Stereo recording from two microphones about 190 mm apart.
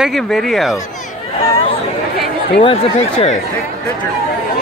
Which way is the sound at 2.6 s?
30° left (ahead or behind).